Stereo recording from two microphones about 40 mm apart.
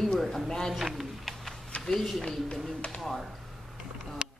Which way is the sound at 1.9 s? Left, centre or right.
Centre.